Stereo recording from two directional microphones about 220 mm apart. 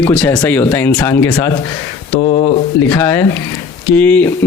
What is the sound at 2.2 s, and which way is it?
Speech, 30° left (ahead or behind).